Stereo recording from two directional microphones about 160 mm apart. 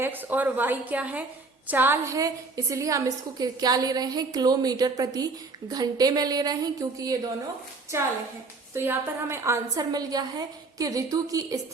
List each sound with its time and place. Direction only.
0.0 s a woman's voice: 10° right (ahead or behind)
8.7 s a woman's voice: 15° right (ahead or behind)